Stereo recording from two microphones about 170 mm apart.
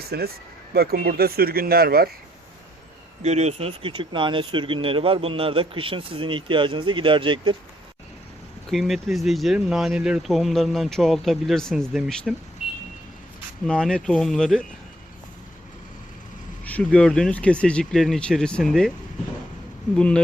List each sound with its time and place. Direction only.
0.1 s speech: 70° right (ahead or behind)
3.2 s speech: 40° right (ahead or behind)
8.7 s speech: centre (ahead or behind)
13.7 s speech: 5° left (ahead or behind)
16.6 s speech: 5° left (ahead or behind)
20.0 s speech: 5° left (ahead or behind)